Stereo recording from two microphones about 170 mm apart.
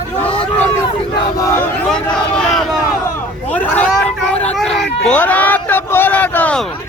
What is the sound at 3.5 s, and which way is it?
Vehicle, 10° left (ahead or behind).